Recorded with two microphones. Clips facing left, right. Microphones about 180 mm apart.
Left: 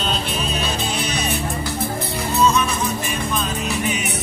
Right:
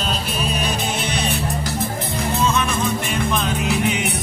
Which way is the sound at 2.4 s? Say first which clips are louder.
Left 2 dB; 55° right (ahead or behind).